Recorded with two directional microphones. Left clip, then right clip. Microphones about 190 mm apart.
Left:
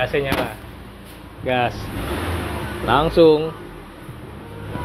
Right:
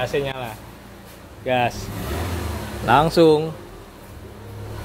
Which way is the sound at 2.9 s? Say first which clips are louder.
Left 1 dB; 60° right (ahead or behind).